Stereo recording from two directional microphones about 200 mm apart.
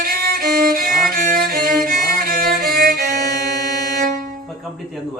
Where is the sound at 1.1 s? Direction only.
45° right (ahead or behind).